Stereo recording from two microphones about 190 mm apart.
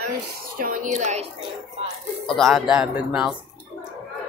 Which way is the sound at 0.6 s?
45° right (ahead or behind).